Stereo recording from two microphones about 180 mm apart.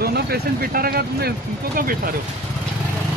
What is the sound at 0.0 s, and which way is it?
Speech, 60° right (ahead or behind).